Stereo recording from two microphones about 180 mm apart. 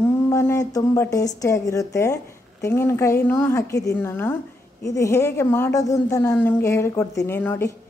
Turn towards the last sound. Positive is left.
turn(degrees=15)  # may be behind; listen again after turning